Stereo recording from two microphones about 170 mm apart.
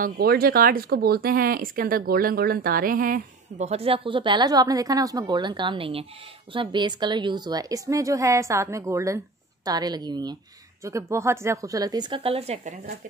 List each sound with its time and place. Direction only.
0.0 s a woman's voice: 60° right (ahead or behind); by 12.9 s 40° right (ahead or behind)